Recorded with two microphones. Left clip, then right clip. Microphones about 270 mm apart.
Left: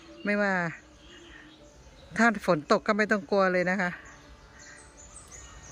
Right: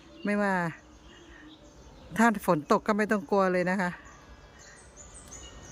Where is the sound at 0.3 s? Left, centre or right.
Centre.